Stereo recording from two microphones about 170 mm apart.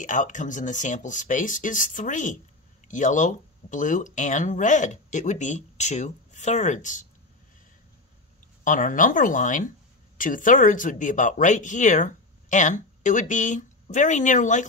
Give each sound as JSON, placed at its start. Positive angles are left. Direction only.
{"t": 0.0, "sound": "speech", "side_deg": 45}
{"t": 8.6, "sound": "speech", "side_deg": 50}